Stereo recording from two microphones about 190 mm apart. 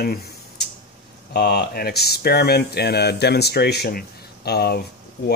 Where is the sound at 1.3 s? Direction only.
60° left (ahead or behind).